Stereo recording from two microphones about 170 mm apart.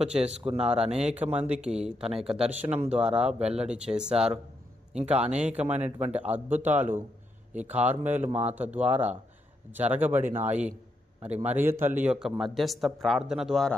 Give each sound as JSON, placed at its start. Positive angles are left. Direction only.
{"t": 0.0, "sound": "speech", "side_deg": -5}
{"t": 8.3, "sound": "speech", "side_deg": -40}
{"t": 8.5, "sound": "speech", "side_deg": -10}